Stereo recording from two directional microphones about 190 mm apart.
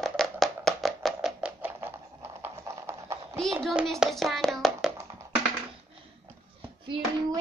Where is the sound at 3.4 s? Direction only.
Centre (ahead or behind).